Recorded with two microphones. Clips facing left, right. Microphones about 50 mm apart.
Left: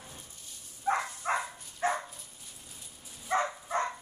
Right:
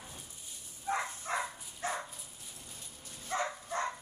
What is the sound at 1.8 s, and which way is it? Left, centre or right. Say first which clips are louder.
Dog: left 7 dB; left.